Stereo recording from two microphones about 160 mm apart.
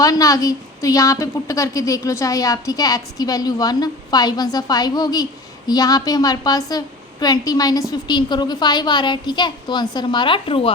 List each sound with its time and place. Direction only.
0.0 s a woman's voice: 20° left (ahead or behind)